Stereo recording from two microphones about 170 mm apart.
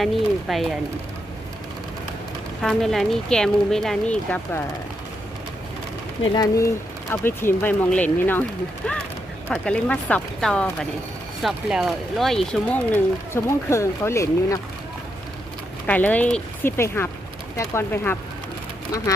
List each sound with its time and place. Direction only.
0.0 s a woman's voice: centre (ahead or behind)
2.6 s a woman's voice: centre (ahead or behind)
6.3 s speech: 20° left (ahead or behind)
9.5 s a woman's voice: 5° left (ahead or behind)
15.9 s speech: 10° left (ahead or behind)